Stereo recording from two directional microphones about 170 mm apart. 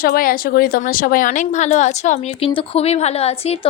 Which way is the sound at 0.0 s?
60° left (ahead or behind).